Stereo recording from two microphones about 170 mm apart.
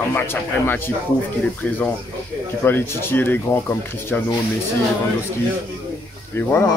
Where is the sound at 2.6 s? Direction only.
15° left (ahead or behind).